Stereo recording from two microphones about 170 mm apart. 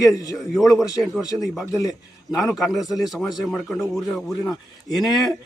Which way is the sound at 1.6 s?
20° left (ahead or behind).